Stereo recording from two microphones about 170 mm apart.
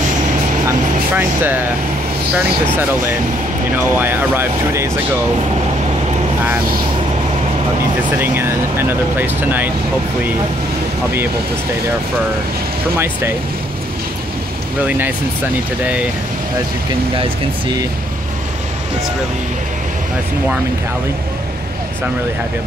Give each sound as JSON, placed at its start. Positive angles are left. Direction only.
{"t": 0.7, "sound": "speech", "side_deg": -10}
{"t": 9.2, "sound": "speech", "side_deg": -10}
{"t": 12.9, "sound": "speech", "side_deg": -15}
{"t": 14.9, "sound": "speech", "side_deg": -10}
{"t": 17.2, "sound": "speech", "side_deg": -25}